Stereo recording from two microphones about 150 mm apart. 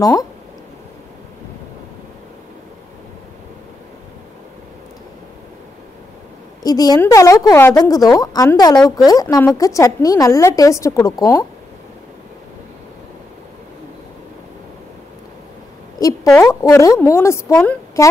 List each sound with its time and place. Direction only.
0.0 s a woman's voice: 25° left (ahead or behind)
6.6 s a woman's voice: 25° left (ahead or behind)
16.3 s a woman's voice: 20° left (ahead or behind)